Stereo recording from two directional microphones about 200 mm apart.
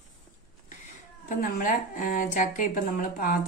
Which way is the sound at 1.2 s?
45° left (ahead or behind).